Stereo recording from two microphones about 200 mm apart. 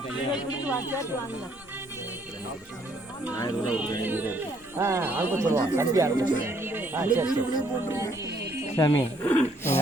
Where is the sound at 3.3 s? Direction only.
20° left (ahead or behind).